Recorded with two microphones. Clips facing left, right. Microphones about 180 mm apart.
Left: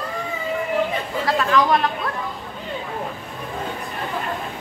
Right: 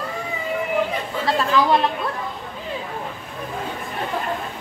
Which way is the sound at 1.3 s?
Centre (ahead or behind).